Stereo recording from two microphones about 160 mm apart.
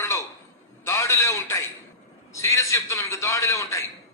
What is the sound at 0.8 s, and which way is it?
A man's voice, 15° left (ahead or behind).